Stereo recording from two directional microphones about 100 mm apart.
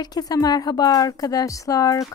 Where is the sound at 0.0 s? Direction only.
40° left (ahead or behind).